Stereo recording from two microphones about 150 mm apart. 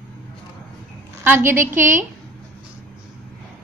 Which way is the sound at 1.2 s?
15° right (ahead or behind).